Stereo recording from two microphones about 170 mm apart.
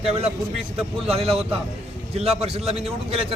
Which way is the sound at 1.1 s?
35° right (ahead or behind).